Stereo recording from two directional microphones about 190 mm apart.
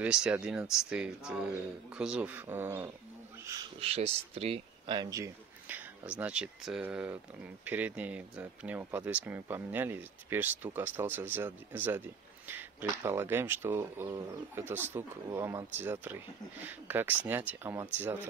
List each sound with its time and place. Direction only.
0.0 s speech: 5° right (ahead or behind)
3.8 s speech: 30° right (ahead or behind); by 17.8 s 10° right (ahead or behind)